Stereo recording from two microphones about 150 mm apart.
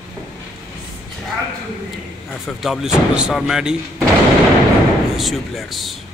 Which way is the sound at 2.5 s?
Centre (ahead or behind).